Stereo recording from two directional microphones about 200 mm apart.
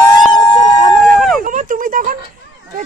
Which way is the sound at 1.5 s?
40° right (ahead or behind).